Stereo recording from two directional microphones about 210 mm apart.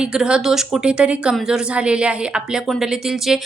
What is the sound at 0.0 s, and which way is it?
Speech, 5° right (ahead or behind).